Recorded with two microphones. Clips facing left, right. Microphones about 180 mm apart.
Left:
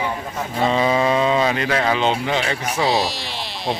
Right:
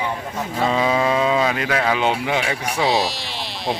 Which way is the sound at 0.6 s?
Centre (ahead or behind).